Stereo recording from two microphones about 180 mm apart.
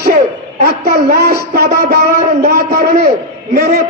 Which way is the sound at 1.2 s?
65° right (ahead or behind).